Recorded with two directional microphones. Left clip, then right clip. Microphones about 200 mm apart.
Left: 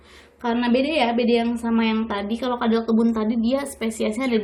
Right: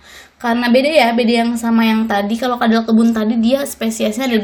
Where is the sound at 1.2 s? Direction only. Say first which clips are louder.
Right 5 dB; 45° right (ahead or behind).